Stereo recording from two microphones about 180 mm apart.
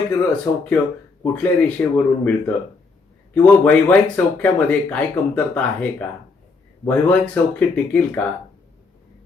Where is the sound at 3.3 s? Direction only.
5° left (ahead or behind).